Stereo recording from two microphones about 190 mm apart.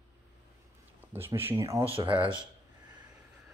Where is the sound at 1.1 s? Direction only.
10° right (ahead or behind).